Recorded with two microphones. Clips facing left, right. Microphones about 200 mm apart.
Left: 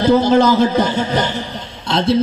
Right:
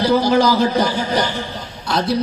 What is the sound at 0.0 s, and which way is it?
A man's voice, 25° left (ahead or behind).